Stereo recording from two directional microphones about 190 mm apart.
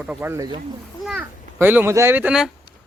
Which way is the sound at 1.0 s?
10° right (ahead or behind).